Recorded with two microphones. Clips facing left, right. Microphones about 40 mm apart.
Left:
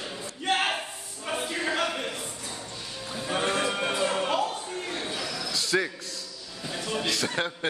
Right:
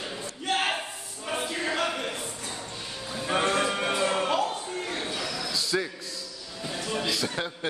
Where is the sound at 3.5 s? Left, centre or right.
Centre.